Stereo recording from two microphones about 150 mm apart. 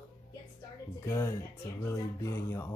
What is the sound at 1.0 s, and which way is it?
Speech, 15° left (ahead or behind).